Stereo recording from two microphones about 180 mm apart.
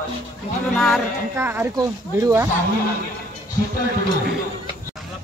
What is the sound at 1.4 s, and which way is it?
Speech, 10° right (ahead or behind).